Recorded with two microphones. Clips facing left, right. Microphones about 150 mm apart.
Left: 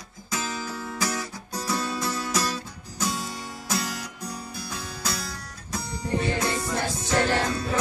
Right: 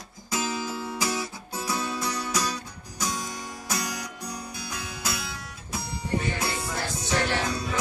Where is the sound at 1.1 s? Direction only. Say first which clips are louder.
Even; 5° right (ahead or behind).